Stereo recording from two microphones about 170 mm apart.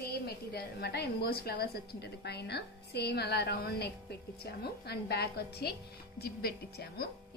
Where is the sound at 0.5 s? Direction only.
70° left (ahead or behind).